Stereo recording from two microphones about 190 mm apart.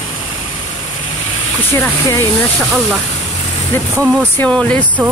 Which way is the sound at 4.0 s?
5° left (ahead or behind).